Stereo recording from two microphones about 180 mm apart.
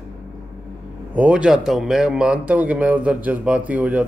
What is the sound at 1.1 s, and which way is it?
Speech, 5° right (ahead or behind).